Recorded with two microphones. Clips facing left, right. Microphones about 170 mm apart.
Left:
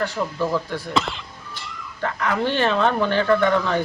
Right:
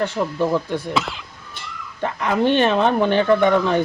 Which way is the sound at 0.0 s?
20° right (ahead or behind).